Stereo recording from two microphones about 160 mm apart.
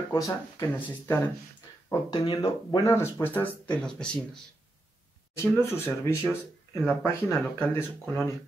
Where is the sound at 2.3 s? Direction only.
20° left (ahead or behind).